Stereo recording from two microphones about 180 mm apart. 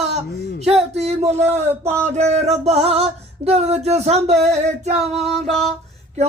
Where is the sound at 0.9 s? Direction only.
35° right (ahead or behind).